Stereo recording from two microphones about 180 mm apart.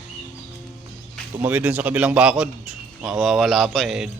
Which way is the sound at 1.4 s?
10° right (ahead or behind).